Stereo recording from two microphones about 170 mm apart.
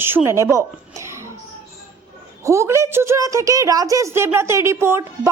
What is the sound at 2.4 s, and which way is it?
Speech, 15° right (ahead or behind).